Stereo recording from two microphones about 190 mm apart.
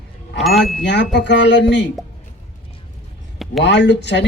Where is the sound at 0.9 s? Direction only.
65° left (ahead or behind).